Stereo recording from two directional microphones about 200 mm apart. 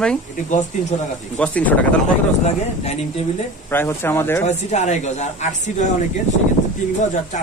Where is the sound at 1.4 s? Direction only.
5° left (ahead or behind).